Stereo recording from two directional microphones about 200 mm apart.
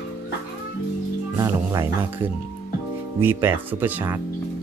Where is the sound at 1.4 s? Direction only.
15° right (ahead or behind).